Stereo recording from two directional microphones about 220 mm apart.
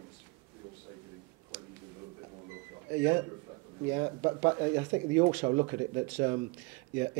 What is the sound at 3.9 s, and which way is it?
Speech, 20° right (ahead or behind).